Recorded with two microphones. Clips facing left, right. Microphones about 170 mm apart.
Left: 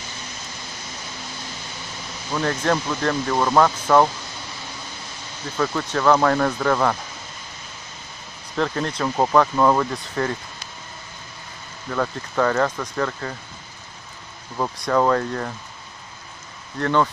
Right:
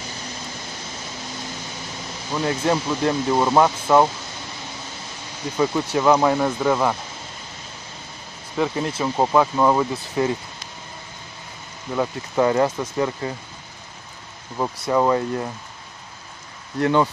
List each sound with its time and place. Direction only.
2.3 s speech: 10° right (ahead or behind)
5.6 s speech: 15° right (ahead or behind)
8.5 s speech: 10° right (ahead or behind)
11.9 s speech: 20° right (ahead or behind)
14.6 s speech: 10° right (ahead or behind)
16.8 s speech: 15° right (ahead or behind)